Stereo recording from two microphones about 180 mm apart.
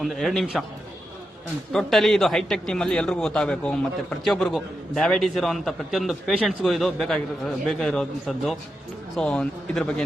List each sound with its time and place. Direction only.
0.0 s a man's voice: centre (ahead or behind)
1.7 s a man's voice: centre (ahead or behind)